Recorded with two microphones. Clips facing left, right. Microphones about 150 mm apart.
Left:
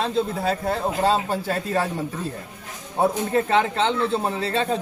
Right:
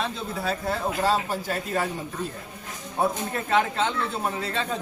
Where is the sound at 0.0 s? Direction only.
25° left (ahead or behind).